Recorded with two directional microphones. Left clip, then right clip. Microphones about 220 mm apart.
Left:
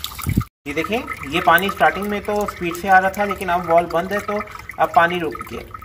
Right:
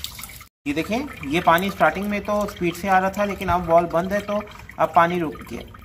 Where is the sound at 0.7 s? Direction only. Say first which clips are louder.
Left 3 dB; 5° right (ahead or behind).